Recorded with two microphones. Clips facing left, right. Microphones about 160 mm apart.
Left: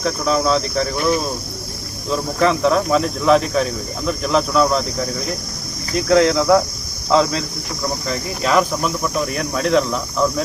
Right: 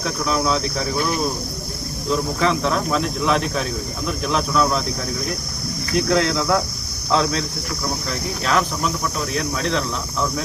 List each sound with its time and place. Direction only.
0.0 s speech: centre (ahead or behind)
2.0 s speech: centre (ahead or behind)